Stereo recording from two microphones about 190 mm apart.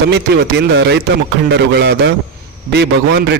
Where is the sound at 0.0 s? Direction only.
65° right (ahead or behind).